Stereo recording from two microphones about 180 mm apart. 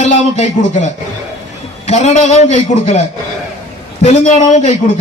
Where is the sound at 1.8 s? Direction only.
40° left (ahead or behind).